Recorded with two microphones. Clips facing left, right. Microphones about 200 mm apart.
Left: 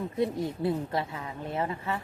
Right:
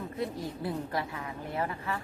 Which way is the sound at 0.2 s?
25° left (ahead or behind).